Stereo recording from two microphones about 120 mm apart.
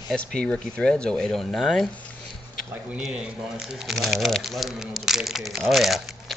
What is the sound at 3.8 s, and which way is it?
Speech, centre (ahead or behind).